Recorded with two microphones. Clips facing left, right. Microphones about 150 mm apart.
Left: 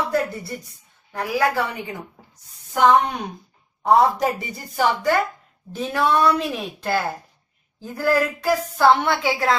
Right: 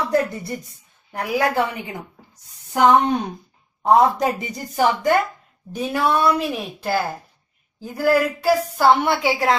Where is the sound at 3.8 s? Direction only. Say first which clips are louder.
Right 1 dB; 20° right (ahead or behind).